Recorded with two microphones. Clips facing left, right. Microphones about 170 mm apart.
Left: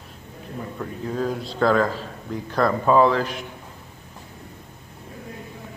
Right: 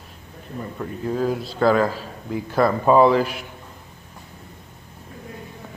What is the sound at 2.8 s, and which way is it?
Speech, 15° right (ahead or behind).